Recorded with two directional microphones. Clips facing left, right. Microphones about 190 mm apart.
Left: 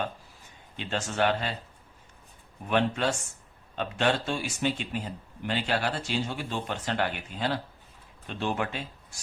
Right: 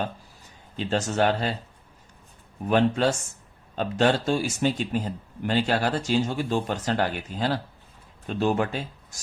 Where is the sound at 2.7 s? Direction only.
40° right (ahead or behind).